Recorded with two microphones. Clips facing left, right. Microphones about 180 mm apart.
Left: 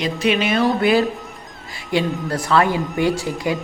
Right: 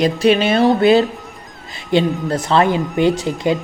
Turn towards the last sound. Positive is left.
turn(degrees=-20)  # may be behind; listen again after turning